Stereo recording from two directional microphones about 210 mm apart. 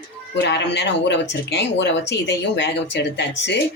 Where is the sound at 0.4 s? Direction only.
55° left (ahead or behind).